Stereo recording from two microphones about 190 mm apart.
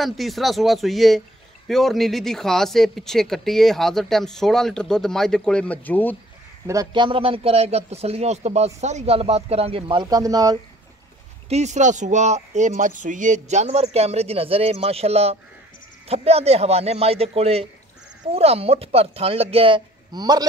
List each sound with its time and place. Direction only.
0.0 s speech: centre (ahead or behind)
6.7 s speech: 20° right (ahead or behind)
11.4 s speech: 35° right (ahead or behind)